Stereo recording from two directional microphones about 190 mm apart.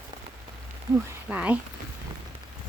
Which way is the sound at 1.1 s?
5° right (ahead or behind).